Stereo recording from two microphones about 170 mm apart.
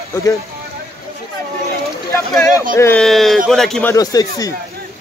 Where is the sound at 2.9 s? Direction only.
Centre (ahead or behind).